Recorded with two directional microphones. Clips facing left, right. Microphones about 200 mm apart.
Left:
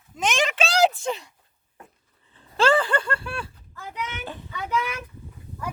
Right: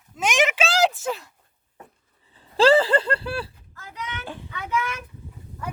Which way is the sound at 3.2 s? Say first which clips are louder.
Right 4 dB; 35° right (ahead or behind).